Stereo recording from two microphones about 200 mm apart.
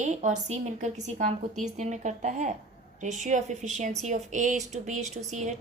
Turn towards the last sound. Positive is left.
turn(degrees=-35)  # may be behind; listen again after turning